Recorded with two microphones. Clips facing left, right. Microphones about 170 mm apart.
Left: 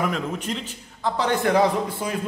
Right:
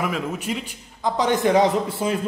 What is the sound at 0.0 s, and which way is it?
A man's voice, 5° right (ahead or behind).